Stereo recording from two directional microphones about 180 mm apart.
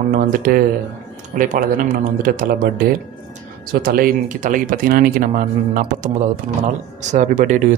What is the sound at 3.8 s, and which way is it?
Speech, 55° right (ahead or behind).